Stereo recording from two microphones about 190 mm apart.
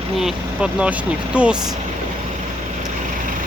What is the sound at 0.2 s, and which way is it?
Speech, 5° right (ahead or behind).